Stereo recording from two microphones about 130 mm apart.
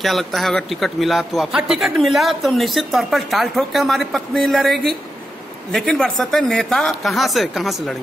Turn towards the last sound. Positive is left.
turn(degrees=0)  # may be behind; listen again after turning